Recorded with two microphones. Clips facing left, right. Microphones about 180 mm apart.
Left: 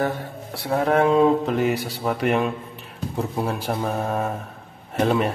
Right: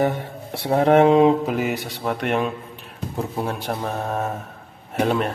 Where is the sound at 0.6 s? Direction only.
30° right (ahead or behind).